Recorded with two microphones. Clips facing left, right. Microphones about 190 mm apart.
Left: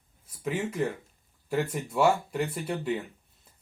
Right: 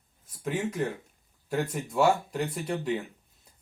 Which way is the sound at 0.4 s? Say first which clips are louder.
Even; 5° left (ahead or behind).